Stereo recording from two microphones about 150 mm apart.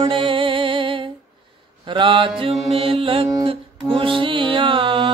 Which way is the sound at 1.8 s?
35° right (ahead or behind).